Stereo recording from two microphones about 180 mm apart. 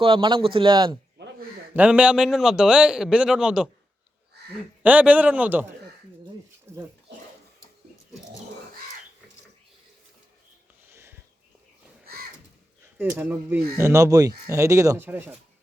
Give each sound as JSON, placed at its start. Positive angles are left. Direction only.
{"t": 0.0, "sound": "speech", "side_deg": -25}
{"t": 1.2, "sound": "a sound", "side_deg": -70}
{"t": 1.7, "sound": "a man's voice", "side_deg": -10}
{"t": 4.8, "sound": "speech", "side_deg": -10}
{"t": 12.8, "sound": "speech", "side_deg": -10}